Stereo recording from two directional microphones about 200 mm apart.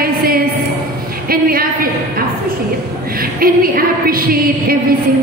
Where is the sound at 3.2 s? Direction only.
45° right (ahead or behind).